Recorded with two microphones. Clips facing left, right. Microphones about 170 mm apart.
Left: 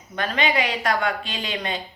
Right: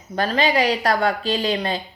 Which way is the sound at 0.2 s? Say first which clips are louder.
Right 4 dB; 35° right (ahead or behind).